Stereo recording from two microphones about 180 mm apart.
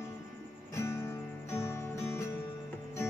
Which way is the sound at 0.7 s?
15° left (ahead or behind).